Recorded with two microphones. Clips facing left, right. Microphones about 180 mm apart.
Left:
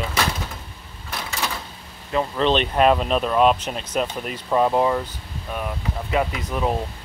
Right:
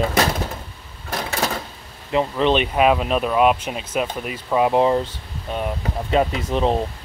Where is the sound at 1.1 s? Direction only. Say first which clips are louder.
Right 5 dB; 45° right (ahead or behind).